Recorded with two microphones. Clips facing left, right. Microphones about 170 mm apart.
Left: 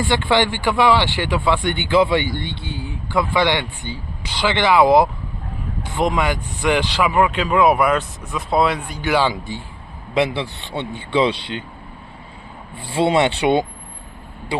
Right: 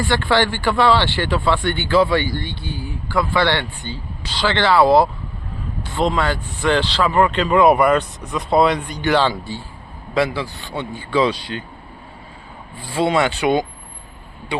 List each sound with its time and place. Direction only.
0.0 s speech: 20° left (ahead or behind)
12.8 s speech: 25° left (ahead or behind)